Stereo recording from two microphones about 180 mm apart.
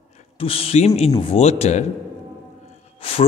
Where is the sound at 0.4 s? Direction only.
30° left (ahead or behind).